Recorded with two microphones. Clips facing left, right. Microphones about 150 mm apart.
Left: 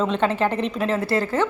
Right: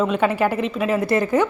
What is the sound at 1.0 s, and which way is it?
Speech, 20° right (ahead or behind).